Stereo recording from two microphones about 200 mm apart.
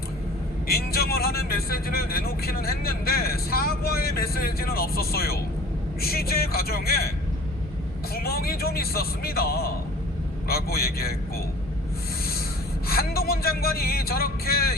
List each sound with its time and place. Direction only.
0.7 s speech: 50° left (ahead or behind)
8.1 s speech: 50° left (ahead or behind)
12.9 s speech: 50° left (ahead or behind)